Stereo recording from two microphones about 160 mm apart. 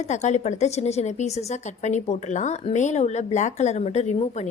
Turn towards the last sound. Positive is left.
turn(degrees=45)  # may be behind; listen again after turning